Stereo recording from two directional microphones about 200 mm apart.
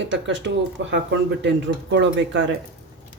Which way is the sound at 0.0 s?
65° right (ahead or behind).